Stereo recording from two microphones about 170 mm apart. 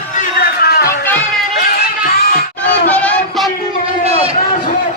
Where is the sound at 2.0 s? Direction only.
65° left (ahead or behind).